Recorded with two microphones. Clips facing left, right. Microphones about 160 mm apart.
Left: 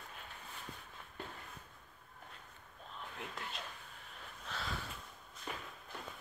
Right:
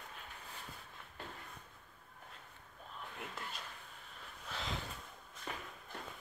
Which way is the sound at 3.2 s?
Centre (ahead or behind).